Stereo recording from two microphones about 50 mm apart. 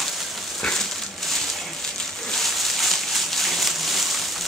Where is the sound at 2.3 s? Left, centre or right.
Centre.